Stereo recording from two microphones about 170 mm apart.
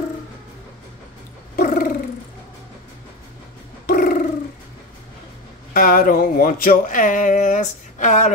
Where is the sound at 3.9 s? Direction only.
60° left (ahead or behind).